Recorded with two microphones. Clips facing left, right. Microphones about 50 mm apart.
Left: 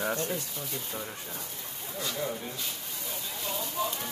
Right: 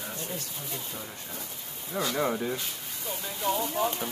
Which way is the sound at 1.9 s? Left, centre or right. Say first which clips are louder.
Right 6 dB; right.